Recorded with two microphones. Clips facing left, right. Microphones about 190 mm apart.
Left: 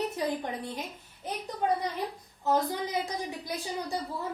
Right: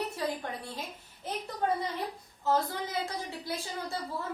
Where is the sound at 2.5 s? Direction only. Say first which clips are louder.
Left 2 dB; 15° left (ahead or behind).